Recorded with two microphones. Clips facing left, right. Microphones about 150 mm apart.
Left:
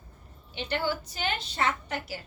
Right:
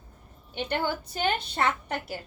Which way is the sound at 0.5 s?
55° right (ahead or behind).